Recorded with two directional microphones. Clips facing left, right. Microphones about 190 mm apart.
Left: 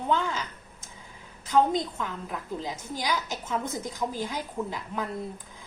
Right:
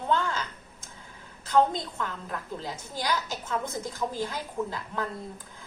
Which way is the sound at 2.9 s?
15° left (ahead or behind).